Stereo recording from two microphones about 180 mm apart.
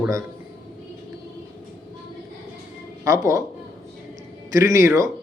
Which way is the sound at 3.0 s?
15° right (ahead or behind).